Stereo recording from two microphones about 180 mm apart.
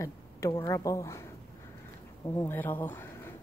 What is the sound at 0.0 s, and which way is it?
A woman's voice, 15° left (ahead or behind).